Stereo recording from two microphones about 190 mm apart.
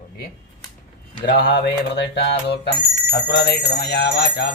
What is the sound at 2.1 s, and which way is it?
Bell, 65° left (ahead or behind).